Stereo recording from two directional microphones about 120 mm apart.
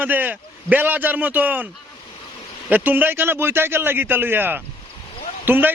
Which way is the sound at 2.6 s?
15° right (ahead or behind).